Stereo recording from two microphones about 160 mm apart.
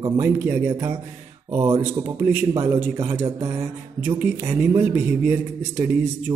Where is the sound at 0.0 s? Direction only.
15° right (ahead or behind).